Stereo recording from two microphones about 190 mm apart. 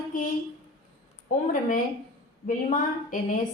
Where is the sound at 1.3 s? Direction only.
45° left (ahead or behind).